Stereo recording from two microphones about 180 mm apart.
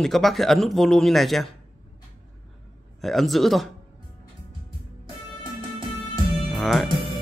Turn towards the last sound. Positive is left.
turn(degrees=0)  # may be behind; listen again after turning